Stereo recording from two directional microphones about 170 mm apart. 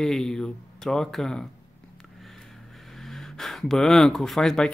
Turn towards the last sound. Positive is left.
turn(degrees=0)  # may be behind; listen again after turning